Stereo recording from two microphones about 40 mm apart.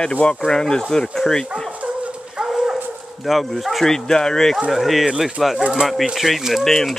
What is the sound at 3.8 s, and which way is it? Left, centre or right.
Speech, centre.